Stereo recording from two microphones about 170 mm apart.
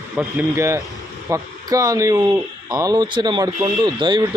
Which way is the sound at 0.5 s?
15° right (ahead or behind).